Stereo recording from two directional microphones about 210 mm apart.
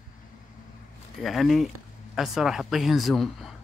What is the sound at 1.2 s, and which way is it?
Speech, centre (ahead or behind).